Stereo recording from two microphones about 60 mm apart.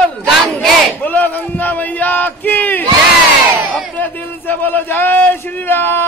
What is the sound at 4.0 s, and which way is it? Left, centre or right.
A man's voice, left.